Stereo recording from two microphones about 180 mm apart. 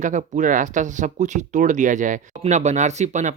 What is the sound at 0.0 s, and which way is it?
Speech, 45° right (ahead or behind).